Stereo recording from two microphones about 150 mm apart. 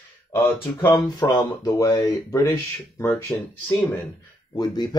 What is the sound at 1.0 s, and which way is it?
Speech, 25° left (ahead or behind).